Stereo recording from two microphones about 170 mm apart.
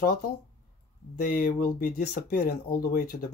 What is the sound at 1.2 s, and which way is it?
Speech, 65° left (ahead or behind).